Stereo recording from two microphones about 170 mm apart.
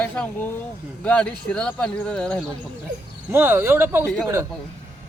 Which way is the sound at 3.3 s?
15° right (ahead or behind).